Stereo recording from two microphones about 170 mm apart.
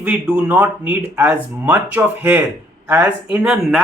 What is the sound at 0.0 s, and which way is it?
Speech, 10° right (ahead or behind).